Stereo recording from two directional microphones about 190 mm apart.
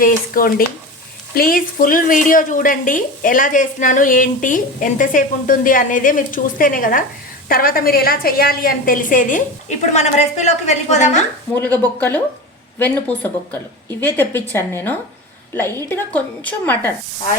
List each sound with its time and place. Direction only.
0.0 s speech: 50° left (ahead or behind)
11.5 s a woman's voice: 10° left (ahead or behind)